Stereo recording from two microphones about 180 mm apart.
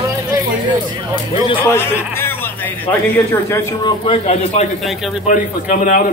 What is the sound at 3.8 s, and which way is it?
Speech, 25° left (ahead or behind).